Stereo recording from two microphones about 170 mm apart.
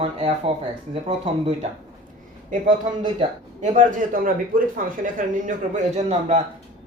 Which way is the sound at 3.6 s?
50° right (ahead or behind).